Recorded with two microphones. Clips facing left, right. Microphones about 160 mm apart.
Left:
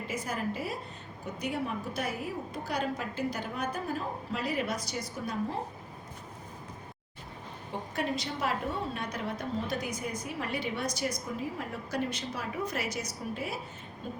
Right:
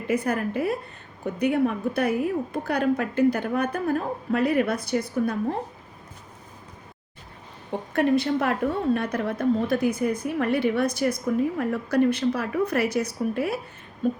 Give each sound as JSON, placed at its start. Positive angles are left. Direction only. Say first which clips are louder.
{"t": 0.1, "sound": "a woman's voice", "louder": "right 11 dB", "side_deg": -60}
{"t": 7.9, "sound": "a woman's voice", "louder": "right 13 dB", "side_deg": -60}
{"t": 14.0, "sound": "a sound", "louder": "right 15 dB", "side_deg": -55}